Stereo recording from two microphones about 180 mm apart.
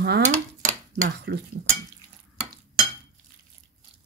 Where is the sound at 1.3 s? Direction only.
70° right (ahead or behind).